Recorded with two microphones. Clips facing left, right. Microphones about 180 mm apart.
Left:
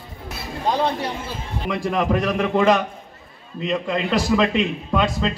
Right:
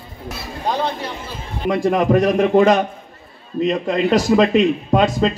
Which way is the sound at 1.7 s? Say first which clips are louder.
Right 6 dB; 45° right (ahead or behind).